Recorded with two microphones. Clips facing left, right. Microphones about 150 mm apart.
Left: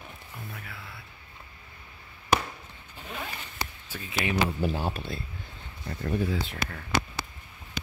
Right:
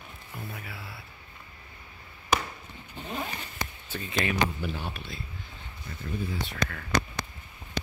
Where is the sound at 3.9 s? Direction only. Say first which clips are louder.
Right 3 dB; 5° left (ahead or behind).